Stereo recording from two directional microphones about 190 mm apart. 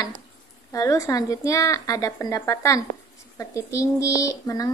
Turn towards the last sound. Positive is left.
turn(degrees=20)  # may be behind; listen again after turning